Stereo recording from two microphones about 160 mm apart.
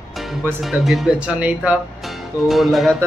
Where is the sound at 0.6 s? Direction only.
Centre (ahead or behind).